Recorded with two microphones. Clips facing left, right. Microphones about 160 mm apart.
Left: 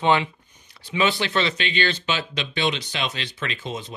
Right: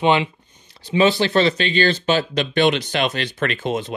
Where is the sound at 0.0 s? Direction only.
20° right (ahead or behind).